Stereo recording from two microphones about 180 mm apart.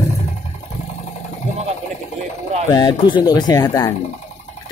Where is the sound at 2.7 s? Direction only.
25° left (ahead or behind).